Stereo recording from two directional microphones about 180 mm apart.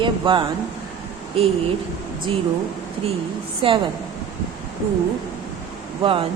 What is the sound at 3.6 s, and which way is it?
Speech, 30° right (ahead or behind).